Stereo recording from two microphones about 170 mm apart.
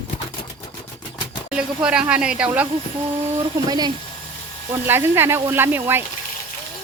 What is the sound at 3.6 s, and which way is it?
Speech, 25° right (ahead or behind).